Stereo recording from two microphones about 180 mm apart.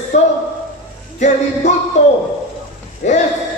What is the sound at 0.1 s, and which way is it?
Speech, 40° left (ahead or behind).